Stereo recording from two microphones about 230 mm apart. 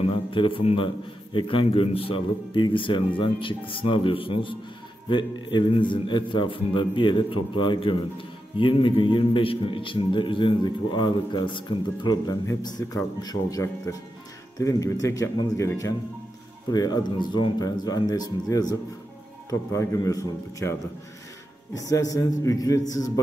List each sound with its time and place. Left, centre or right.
0.0 s a man's voice: left
21.7 s speech: centre